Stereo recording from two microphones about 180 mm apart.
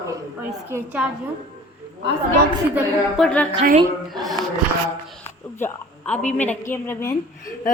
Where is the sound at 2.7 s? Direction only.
5° left (ahead or behind).